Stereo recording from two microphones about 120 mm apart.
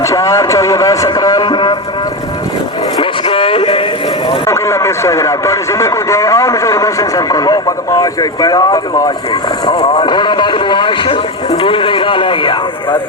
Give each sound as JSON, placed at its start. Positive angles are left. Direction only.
{"t": 0.0, "sound": "speech", "side_deg": 25}
{"t": 3.0, "sound": "a sound", "side_deg": 50}
{"t": 4.4, "sound": "speech", "side_deg": 25}